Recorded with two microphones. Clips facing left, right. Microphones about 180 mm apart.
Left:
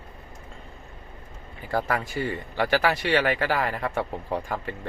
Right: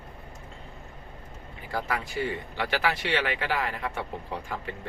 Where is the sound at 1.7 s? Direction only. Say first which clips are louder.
Left 5 dB; 50° left (ahead or behind).